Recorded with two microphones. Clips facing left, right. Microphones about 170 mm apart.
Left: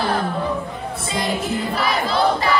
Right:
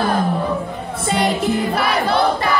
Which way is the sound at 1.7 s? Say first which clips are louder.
Right 3 dB; 65° right (ahead or behind).